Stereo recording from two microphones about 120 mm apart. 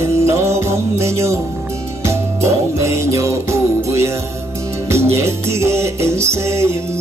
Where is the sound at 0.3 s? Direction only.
25° right (ahead or behind).